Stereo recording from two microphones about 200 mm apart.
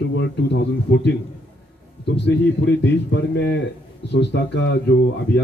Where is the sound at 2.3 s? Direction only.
60° left (ahead or behind).